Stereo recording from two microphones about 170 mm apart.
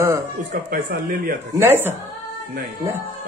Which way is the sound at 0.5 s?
55° right (ahead or behind).